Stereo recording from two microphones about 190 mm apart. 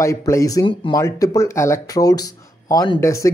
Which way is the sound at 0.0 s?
15° left (ahead or behind).